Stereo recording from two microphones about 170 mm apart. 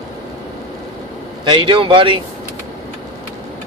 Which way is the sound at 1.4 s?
30° right (ahead or behind).